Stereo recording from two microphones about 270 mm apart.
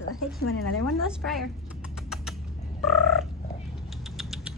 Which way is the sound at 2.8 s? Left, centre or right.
Centre.